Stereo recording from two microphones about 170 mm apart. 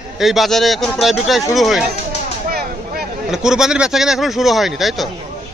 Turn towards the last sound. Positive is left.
turn(degrees=0)  # may be behind; listen again after turning